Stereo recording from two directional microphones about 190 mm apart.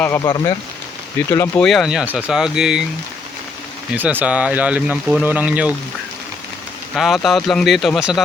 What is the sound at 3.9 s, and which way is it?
Speech, 10° right (ahead or behind).